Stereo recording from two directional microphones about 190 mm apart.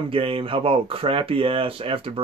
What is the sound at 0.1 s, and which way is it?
Speech, 30° right (ahead or behind).